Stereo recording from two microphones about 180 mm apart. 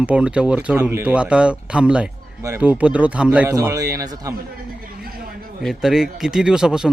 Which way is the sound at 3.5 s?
20° right (ahead or behind).